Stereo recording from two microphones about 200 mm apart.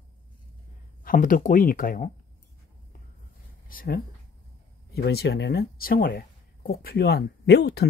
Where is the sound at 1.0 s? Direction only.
45° left (ahead or behind).